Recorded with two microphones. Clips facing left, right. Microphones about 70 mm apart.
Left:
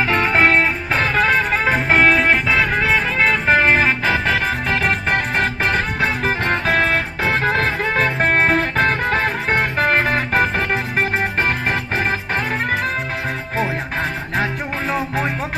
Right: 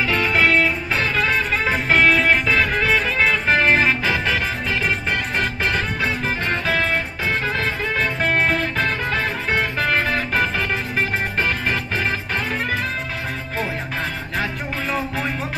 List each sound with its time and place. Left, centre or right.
0.0 s music: left
4.6 s music: left